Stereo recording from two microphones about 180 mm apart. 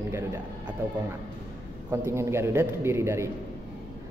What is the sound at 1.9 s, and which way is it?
Speech, 15° right (ahead or behind).